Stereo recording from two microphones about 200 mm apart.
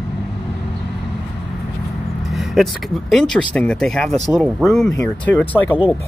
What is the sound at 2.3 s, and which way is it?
Speech, centre (ahead or behind).